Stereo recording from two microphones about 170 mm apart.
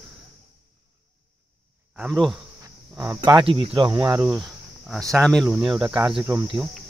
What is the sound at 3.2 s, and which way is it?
Cricket, 30° right (ahead or behind).